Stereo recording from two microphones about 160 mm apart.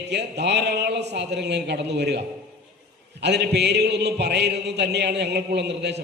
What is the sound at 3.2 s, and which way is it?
A man's voice, 90° right.